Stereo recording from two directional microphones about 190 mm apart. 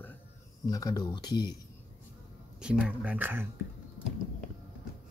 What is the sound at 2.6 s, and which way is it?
Speech, 5° right (ahead or behind).